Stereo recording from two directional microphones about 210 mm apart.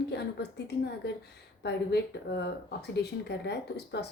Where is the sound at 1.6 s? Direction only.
50° left (ahead or behind).